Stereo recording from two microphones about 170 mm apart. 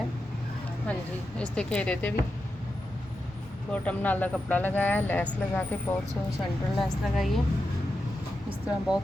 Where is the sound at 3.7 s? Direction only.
10° left (ahead or behind).